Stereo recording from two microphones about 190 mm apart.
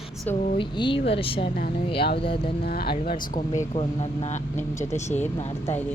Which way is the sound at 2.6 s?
55° left (ahead or behind).